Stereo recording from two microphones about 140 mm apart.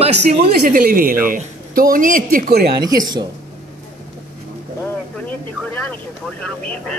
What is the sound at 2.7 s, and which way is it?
Speech, 30° right (ahead or behind).